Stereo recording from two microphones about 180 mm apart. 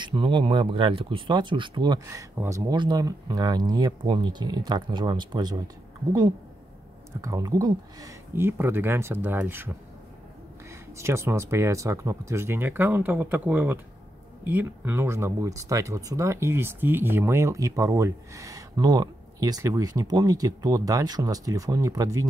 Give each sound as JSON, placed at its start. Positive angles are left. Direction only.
{"t": 0.0, "sound": "speech", "side_deg": -25}
{"t": 7.1, "sound": "speech", "side_deg": -20}
{"t": 10.7, "sound": "speech", "side_deg": -15}